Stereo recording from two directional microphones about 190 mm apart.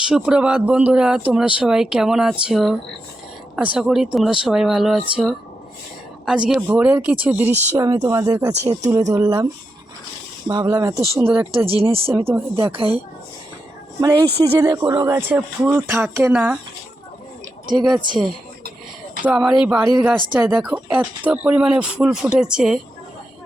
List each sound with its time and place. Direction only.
0.1 s speech: 5° right (ahead or behind)
3.8 s speech: centre (ahead or behind)
10.5 s speech: 20° right (ahead or behind)
11.5 s speech: 30° right (ahead or behind)
12.1 s speech: 15° right (ahead or behind)
12.7 s speech: 30° right (ahead or behind)
14.0 s speech: 20° right (ahead or behind)
19.2 s speech: 5° right (ahead or behind)